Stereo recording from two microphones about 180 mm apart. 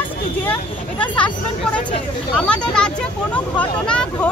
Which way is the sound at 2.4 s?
5° left (ahead or behind).